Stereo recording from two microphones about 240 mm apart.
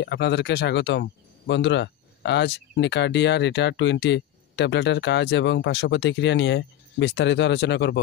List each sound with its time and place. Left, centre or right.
0.0 s speech: left